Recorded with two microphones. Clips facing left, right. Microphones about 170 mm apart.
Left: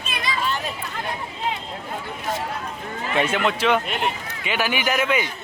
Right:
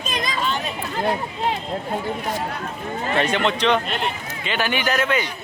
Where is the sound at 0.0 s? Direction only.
40° right (ahead or behind).